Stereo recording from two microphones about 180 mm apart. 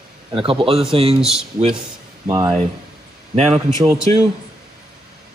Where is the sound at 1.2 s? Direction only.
5° right (ahead or behind).